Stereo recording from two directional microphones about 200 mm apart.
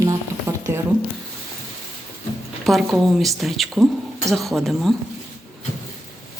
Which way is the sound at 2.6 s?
Centre (ahead or behind).